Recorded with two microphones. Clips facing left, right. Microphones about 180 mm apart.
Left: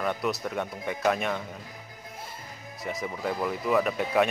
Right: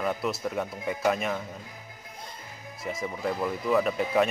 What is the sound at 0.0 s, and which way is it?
Speech, centre (ahead or behind).